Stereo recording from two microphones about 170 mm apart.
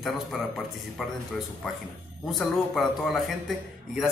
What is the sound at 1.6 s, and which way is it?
A man's voice, centre (ahead or behind).